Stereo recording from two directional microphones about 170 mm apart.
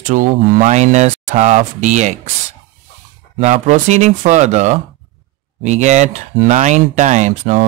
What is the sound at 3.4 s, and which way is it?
Speech, 45° right (ahead or behind).